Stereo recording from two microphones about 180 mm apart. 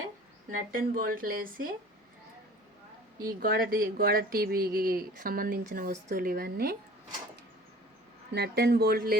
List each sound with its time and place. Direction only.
0.5 s speech: 50° right (ahead or behind)
3.4 s speech: 55° right (ahead or behind)
8.3 s speech: 65° right (ahead or behind)